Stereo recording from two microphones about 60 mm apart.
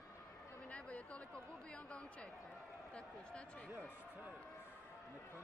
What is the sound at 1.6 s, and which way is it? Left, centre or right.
A man's voice, left.